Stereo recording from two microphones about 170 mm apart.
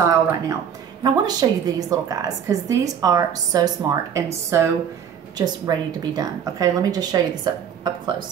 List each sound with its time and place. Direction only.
0.0 s a woman's voice: 20° right (ahead or behind)